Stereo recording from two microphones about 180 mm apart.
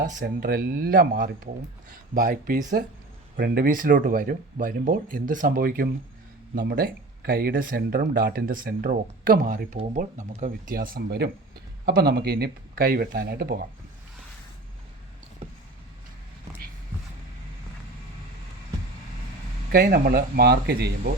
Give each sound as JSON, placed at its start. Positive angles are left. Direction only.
{"t": 0.0, "sound": "speech", "side_deg": -50}
{"t": 3.3, "sound": "speech", "side_deg": -55}
{"t": 19.7, "sound": "speech", "side_deg": -60}